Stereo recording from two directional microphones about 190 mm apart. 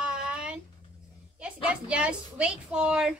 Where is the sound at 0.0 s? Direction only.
5° right (ahead or behind).